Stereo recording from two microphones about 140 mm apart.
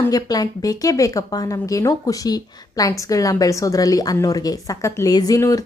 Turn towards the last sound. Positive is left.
turn(degrees=25)  # may be behind; listen again after turning